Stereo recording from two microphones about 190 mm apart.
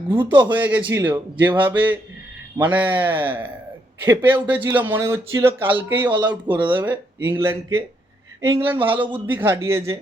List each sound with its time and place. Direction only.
0.3 s speech: 25° right (ahead or behind)
0.5 s speech: 10° right (ahead or behind)
6.1 s speech: 25° right (ahead or behind)
6.7 s speech: 10° right (ahead or behind)